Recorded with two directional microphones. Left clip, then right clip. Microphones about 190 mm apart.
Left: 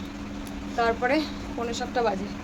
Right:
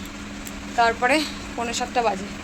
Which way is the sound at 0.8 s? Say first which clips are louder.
Right 5 dB; 10° right (ahead or behind).